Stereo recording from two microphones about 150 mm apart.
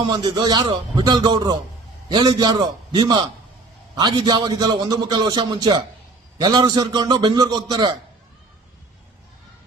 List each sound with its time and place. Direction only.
0.0 s a man's voice: 30° right (ahead or behind)